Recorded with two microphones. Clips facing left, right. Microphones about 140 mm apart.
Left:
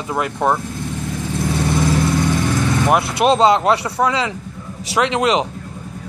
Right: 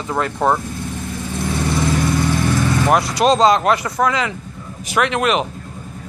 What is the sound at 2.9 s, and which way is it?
Speech, 25° left (ahead or behind).